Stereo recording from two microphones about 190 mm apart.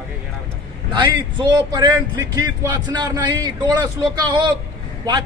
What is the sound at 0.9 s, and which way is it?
A man's voice, 25° right (ahead or behind).